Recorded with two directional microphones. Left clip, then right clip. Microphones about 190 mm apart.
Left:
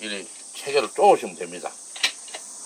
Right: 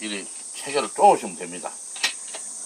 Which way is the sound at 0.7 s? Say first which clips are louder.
Even; 35° left (ahead or behind).